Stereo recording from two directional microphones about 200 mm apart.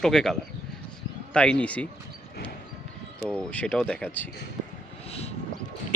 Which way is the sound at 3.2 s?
5° left (ahead or behind).